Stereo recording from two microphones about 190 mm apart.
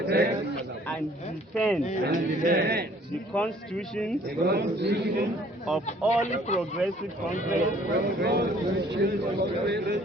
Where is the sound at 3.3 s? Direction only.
5° left (ahead or behind).